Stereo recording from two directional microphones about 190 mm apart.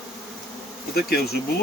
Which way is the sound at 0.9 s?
55° left (ahead or behind).